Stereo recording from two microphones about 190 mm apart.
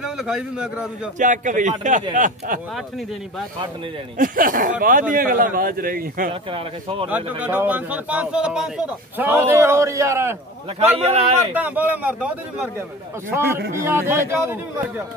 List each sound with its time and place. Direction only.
0.0 s a man's voice: 5° right (ahead or behind)
1.2 s a man's voice: 40° right (ahead or behind)
4.2 s a man's voice: 45° right (ahead or behind)
6.5 s speech: 30° right (ahead or behind)
7.1 s a man's voice: 10° right (ahead or behind)
11.0 s a man's voice: 30° right (ahead or behind)
11.5 s a man's voice: 10° right (ahead or behind)
13.6 s a man's voice: 50° right (ahead or behind)
13.8 s a man's voice: 10° right (ahead or behind)